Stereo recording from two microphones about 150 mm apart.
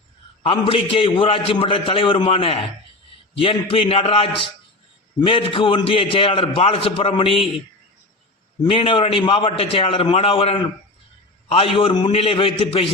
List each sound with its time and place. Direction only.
0.4 s a man's voice: 40° left (ahead or behind)
8.7 s a man's voice: 35° left (ahead or behind)